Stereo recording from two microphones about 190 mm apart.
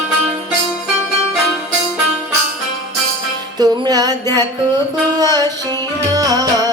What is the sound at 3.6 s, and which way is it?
Music, 20° right (ahead or behind).